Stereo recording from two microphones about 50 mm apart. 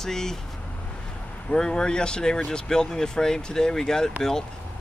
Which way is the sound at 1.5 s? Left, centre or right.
Centre.